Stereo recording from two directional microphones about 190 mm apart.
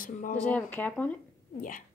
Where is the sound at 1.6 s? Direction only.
45° left (ahead or behind).